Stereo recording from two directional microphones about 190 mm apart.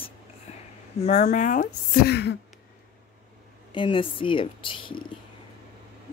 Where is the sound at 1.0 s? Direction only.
40° left (ahead or behind); by 2.4 s 60° left (ahead or behind).